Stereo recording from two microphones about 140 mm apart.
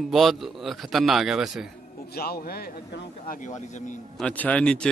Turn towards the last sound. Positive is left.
turn(degrees=5)  # may be behind; listen again after turning